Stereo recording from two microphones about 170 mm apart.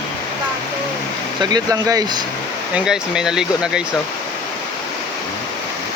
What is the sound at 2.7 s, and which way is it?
Speech, 5° right (ahead or behind).